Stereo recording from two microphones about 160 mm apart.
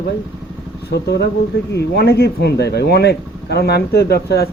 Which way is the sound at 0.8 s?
90° left.